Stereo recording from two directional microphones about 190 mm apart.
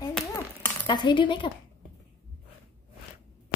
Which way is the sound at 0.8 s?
25° left (ahead or behind).